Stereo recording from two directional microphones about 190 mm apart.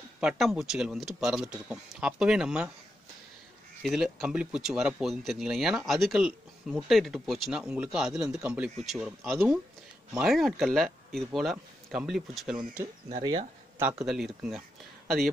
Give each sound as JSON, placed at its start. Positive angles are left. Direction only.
{"t": 0.2, "sound": "speech", "side_deg": -5}
{"t": 3.8, "sound": "speech", "side_deg": 0}
{"t": 13.2, "sound": "speech", "side_deg": -25}
{"t": 13.7, "sound": "speech", "side_deg": -5}